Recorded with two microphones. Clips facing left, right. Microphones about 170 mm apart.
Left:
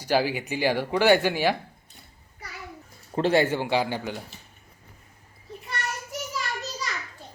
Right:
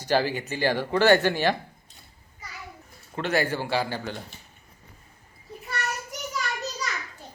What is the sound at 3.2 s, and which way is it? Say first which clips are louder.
A man's voice: left 4 dB; 30° left (ahead or behind).